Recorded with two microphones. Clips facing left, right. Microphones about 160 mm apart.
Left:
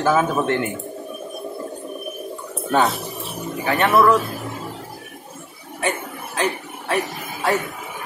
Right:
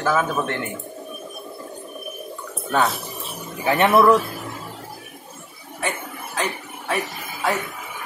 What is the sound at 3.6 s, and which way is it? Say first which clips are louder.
Speech: right 1 dB; 15° right (ahead or behind).